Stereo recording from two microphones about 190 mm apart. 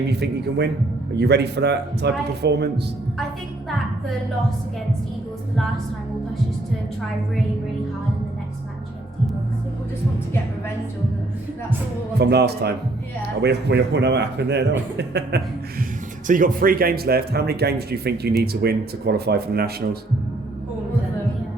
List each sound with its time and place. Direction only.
0.1 s speech: 60° right (ahead or behind)
12.2 s speech: 60° right (ahead or behind)
16.2 s speech: 45° right (ahead or behind)